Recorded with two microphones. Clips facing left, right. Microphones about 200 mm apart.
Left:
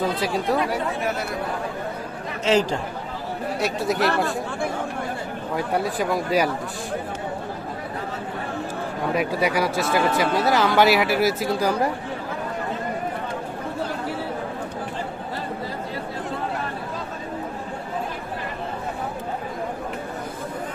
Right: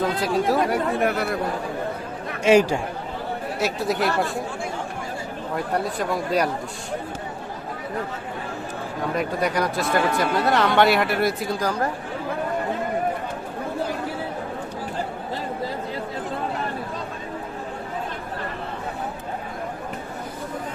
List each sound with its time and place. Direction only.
0.0 s speech: centre (ahead or behind)
0.7 s speech: 55° right (ahead or behind)
2.4 s speech: 10° right (ahead or behind)
3.6 s speech: centre (ahead or behind)
5.5 s speech: 5° left (ahead or behind)
9.1 s speech: 5° left (ahead or behind)